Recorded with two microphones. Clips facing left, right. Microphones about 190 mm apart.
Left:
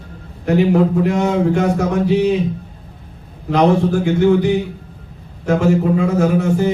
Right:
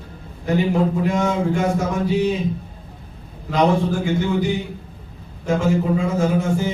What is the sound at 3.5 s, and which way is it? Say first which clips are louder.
A man's voice: left 4 dB; 65° left (ahead or behind).